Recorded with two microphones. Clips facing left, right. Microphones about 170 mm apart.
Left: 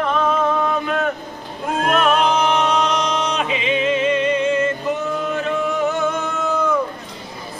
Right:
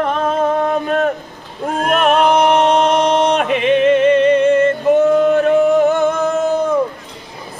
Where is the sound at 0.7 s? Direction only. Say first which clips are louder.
Right 5 dB; 40° right (ahead or behind).